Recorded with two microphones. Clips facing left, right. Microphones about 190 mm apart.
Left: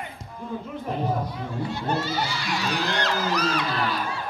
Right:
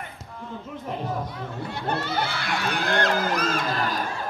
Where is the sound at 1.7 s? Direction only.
60° right (ahead or behind).